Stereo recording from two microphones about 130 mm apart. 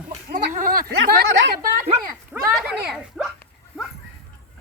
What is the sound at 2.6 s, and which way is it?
Speech, 5° right (ahead or behind).